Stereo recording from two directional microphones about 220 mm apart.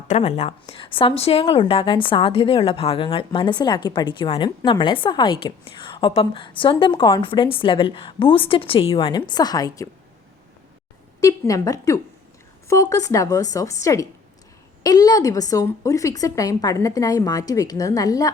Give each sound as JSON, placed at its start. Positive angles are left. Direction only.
{"t": 0.1, "sound": "a woman's voice", "side_deg": 30}
{"t": 11.2, "sound": "a woman's voice", "side_deg": 15}